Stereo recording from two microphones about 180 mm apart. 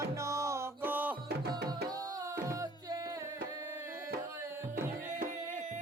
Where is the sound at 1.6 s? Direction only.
20° right (ahead or behind).